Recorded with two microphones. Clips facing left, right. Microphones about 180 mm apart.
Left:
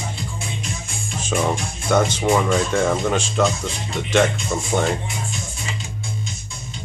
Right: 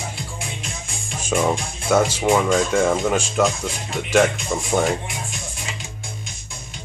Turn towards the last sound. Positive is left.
turn(degrees=-10)  # may be behind; listen again after turning